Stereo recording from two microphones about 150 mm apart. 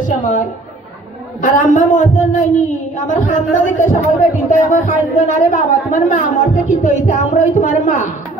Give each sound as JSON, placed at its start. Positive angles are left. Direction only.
{"t": 0.0, "sound": "a woman's voice", "side_deg": 60}